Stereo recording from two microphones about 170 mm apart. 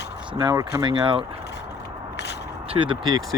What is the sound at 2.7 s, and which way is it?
Speech, 30° right (ahead or behind).